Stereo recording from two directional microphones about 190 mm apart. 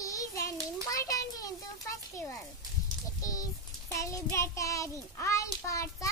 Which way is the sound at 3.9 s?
15° left (ahead or behind).